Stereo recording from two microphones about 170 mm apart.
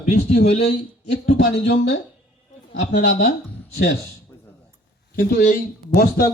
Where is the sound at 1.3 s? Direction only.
90° left.